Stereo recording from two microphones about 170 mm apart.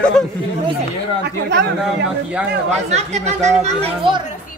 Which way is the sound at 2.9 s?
40° right (ahead or behind).